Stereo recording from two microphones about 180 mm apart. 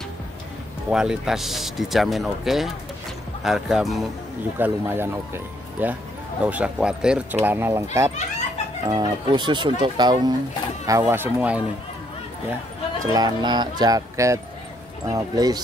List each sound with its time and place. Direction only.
0.8 s speech: 5° right (ahead or behind)
4.6 s speech: 10° right (ahead or behind)
8.8 s speech: 25° right (ahead or behind); by 11.6 s 10° right (ahead or behind)
13.0 s speech: 20° right (ahead or behind)